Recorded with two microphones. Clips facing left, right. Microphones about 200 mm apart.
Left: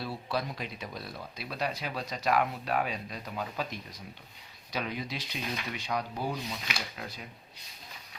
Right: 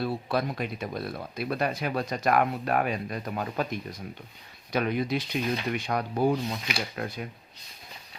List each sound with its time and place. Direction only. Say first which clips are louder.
0.0 s speech: right 6 dB; 55° right (ahead or behind)